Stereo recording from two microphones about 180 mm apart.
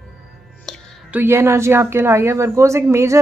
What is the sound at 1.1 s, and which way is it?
A woman's voice, 15° right (ahead or behind).